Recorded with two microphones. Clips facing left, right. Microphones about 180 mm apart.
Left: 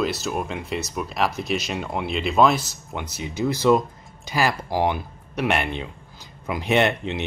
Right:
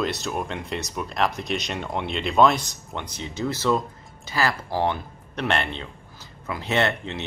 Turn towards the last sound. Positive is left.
turn(degrees=15)  # may be behind; listen again after turning